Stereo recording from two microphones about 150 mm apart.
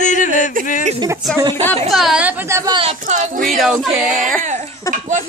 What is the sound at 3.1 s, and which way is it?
Speech, 55° right (ahead or behind).